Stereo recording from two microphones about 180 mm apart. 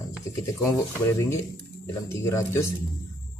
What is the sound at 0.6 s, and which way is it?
Speech, 15° left (ahead or behind).